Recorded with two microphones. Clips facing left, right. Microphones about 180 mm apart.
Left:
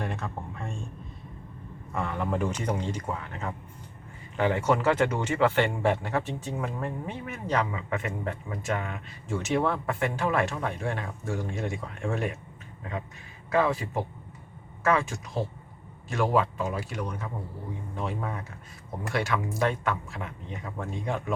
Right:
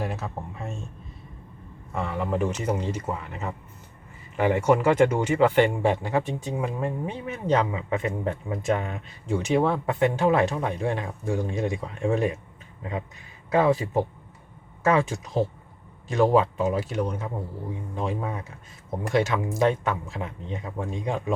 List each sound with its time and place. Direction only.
0.0 s speech: 5° right (ahead or behind)
1.9 s a man's voice: centre (ahead or behind); by 9.0 s 30° right (ahead or behind)
9.2 s a man's voice: 15° right (ahead or behind)
13.6 s speech: 20° right (ahead or behind)
16.0 s a man's voice: 20° right (ahead or behind)
20.9 s a man's voice: 15° right (ahead or behind)